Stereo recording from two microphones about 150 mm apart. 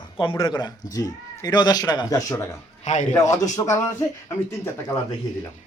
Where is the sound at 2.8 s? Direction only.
50° left (ahead or behind).